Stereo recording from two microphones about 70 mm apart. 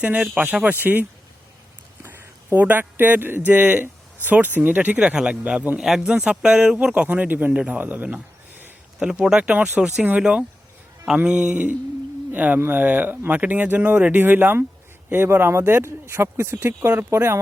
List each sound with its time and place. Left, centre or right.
0.0 s speech: centre
2.0 s speech: right
4.9 s speech: centre
9.0 s speech: centre; by 17.3 s right